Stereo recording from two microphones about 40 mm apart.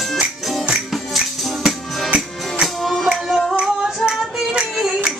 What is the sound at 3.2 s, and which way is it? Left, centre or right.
Music, centre.